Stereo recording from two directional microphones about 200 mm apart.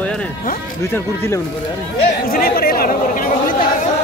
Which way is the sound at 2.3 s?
50° left (ahead or behind).